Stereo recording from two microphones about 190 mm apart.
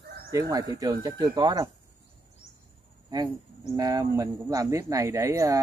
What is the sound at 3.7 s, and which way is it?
Speech, 20° right (ahead or behind).